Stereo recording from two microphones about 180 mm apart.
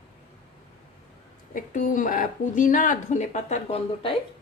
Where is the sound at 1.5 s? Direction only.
50° left (ahead or behind).